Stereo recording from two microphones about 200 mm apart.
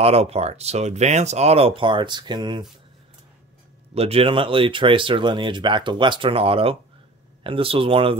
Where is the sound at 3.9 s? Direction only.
30° right (ahead or behind).